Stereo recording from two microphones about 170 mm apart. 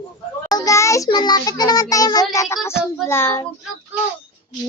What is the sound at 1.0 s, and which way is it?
A woman's voice, 25° left (ahead or behind).